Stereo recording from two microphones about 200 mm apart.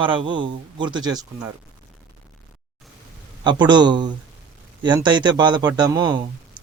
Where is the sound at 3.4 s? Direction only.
20° right (ahead or behind).